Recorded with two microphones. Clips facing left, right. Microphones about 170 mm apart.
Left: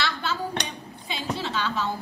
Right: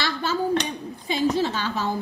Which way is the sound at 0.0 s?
45° right (ahead or behind).